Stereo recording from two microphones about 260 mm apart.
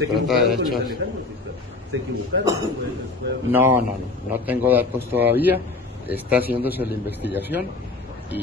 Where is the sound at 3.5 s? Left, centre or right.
Centre.